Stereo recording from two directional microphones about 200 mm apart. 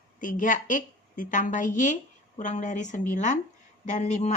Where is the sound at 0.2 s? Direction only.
40° left (ahead or behind).